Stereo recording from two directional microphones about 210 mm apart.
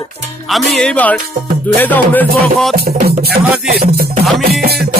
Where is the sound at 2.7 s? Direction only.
45° right (ahead or behind).